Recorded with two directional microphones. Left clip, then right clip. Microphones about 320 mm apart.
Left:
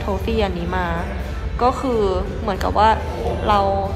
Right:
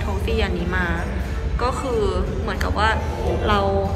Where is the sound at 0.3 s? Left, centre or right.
Centre.